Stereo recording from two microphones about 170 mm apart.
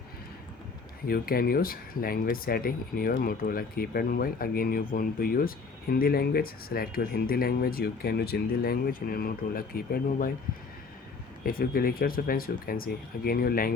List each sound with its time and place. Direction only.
1.0 s speech: 60° left (ahead or behind)
11.4 s speech: 60° left (ahead or behind)